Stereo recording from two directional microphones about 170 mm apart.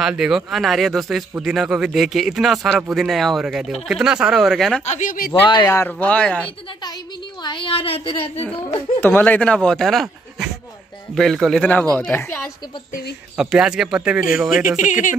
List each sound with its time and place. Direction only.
0.0 s speech: 5° right (ahead or behind)
4.8 s speech: 45° left (ahead or behind)
5.5 s speech: 20° left (ahead or behind)
7.4 s speech: 30° left (ahead or behind)
9.0 s speech: 10° left (ahead or behind)
11.1 s speech: centre (ahead or behind)
13.4 s speech: 5° right (ahead or behind)
14.8 s speech: 50° left (ahead or behind)